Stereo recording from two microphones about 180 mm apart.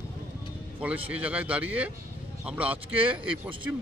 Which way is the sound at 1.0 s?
10° right (ahead or behind).